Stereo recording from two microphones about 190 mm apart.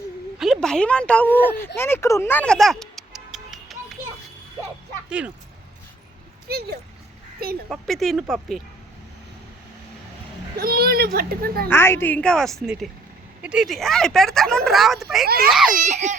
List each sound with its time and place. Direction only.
0.3 s speech: centre (ahead or behind)
5.0 s speech: 5° right (ahead or behind)
6.5 s speech: 55° right (ahead or behind)
7.7 s speech: centre (ahead or behind)
10.6 s a child's voice: 55° right (ahead or behind)
11.7 s a woman's voice: 10° left (ahead or behind)
15.8 s speech: 40° right (ahead or behind)